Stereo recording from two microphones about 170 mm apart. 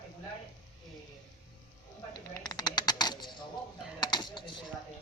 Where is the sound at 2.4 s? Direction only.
25° left (ahead or behind).